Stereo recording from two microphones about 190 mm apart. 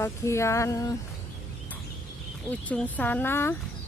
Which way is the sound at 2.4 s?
10° left (ahead or behind).